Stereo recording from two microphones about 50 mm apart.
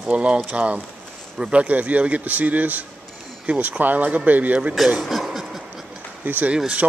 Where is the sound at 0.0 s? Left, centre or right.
Right.